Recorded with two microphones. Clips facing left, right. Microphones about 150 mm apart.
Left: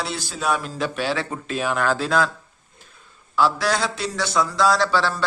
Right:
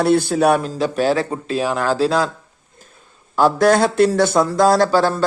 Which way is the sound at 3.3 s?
50° right (ahead or behind).